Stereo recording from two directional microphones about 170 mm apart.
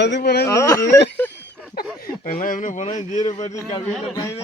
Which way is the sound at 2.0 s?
60° left (ahead or behind).